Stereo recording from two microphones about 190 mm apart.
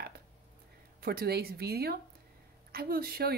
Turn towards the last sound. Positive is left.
turn(degrees=-55)  # may be behind; listen again after turning